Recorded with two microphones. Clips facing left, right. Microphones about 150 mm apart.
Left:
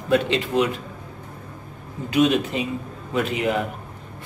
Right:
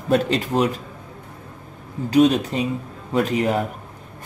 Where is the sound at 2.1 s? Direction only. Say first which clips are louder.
Right 3 dB; 35° right (ahead or behind).